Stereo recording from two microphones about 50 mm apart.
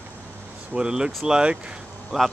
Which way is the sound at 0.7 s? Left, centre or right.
Centre.